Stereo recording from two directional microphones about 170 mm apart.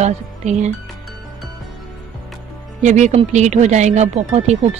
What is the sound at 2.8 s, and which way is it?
Speech, 45° right (ahead or behind).